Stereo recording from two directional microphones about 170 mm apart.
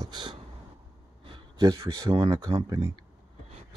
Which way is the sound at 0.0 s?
25° right (ahead or behind).